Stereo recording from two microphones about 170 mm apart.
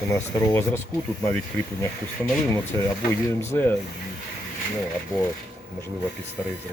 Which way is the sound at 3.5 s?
15° left (ahead or behind).